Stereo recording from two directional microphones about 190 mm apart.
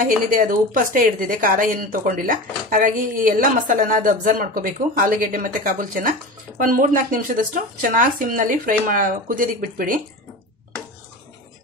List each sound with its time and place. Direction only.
0.0 s a woman's voice: 45° right (ahead or behind)